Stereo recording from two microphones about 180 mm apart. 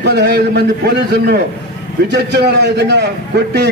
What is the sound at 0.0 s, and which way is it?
A man's voice, 65° right (ahead or behind).